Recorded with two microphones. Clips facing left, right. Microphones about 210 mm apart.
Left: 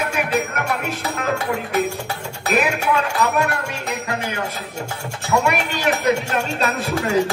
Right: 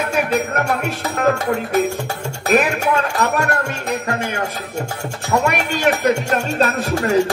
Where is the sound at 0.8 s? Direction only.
45° right (ahead or behind).